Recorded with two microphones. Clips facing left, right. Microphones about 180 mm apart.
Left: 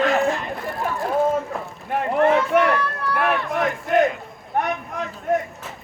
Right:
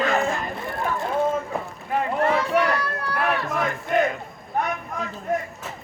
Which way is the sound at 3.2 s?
Centre (ahead or behind).